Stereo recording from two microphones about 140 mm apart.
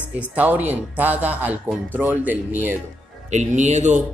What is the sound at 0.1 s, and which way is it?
Speech, 10° right (ahead or behind).